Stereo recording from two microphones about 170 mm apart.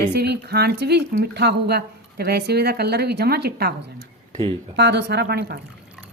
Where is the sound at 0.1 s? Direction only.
70° right (ahead or behind).